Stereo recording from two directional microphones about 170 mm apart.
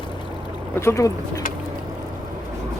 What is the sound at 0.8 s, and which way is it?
Speech, 15° left (ahead or behind).